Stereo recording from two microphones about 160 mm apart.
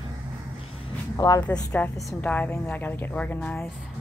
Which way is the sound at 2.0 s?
10° left (ahead or behind).